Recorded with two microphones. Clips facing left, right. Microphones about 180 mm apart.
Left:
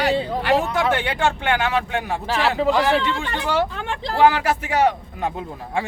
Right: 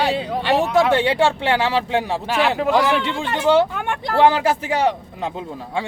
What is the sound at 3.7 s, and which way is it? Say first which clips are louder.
Speech: right 3 dB; 60° right (ahead or behind).